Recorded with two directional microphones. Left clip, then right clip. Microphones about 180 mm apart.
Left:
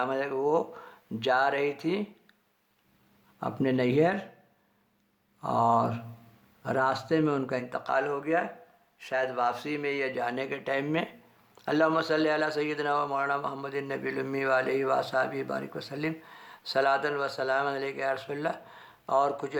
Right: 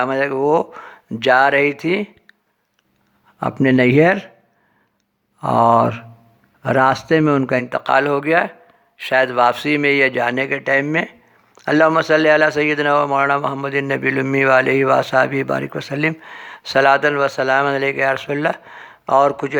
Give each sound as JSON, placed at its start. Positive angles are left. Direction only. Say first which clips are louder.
{"t": 0.0, "sound": "speech", "louder": "right 11 dB", "side_deg": -30}
{"t": 3.4, "sound": "speech", "louder": "right 13 dB", "side_deg": -30}
{"t": 5.4, "sound": "a man's voice", "louder": "right 12 dB", "side_deg": -30}